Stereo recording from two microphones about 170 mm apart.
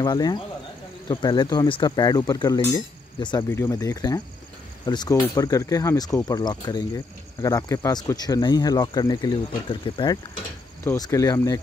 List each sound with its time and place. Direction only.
0.0 s speech: 25° left (ahead or behind)
3.4 s speech: 15° left (ahead or behind)
10.8 s speech: 15° left (ahead or behind)